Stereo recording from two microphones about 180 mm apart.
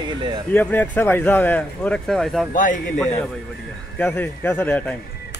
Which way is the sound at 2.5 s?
45° left (ahead or behind).